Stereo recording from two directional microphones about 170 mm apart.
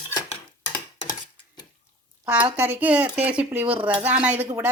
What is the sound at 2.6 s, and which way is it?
A woman's voice, 10° right (ahead or behind).